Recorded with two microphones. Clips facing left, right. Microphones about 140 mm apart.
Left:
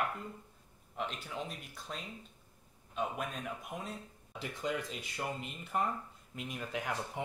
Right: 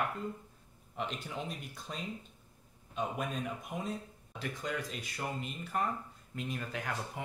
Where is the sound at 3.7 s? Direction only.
Centre (ahead or behind).